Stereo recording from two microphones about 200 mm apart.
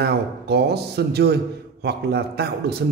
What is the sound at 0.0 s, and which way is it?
A man's voice, 55° right (ahead or behind).